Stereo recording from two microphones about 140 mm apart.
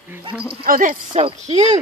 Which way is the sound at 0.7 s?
80° right.